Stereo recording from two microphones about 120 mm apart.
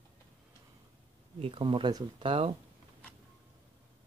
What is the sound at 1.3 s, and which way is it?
Speech, 50° right (ahead or behind).